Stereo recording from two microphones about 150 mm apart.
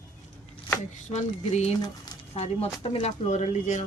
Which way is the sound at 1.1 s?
45° left (ahead or behind).